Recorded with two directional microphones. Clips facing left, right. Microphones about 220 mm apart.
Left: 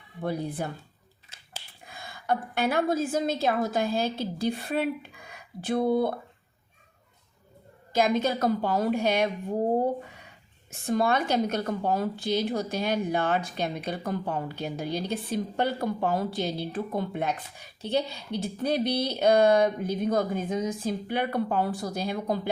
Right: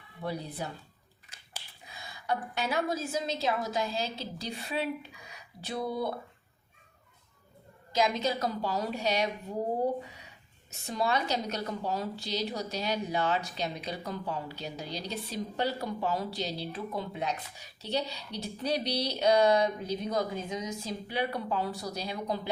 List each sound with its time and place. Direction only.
0.2 s a woman's voice: 50° left (ahead or behind)
1.8 s a woman's voice: 55° left (ahead or behind)
7.9 s a woman's voice: 50° left (ahead or behind)
10.7 s a woman's voice: 50° left (ahead or behind)